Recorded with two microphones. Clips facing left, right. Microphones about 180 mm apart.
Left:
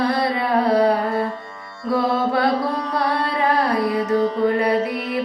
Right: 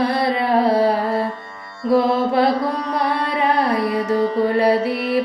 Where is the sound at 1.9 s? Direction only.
25° right (ahead or behind).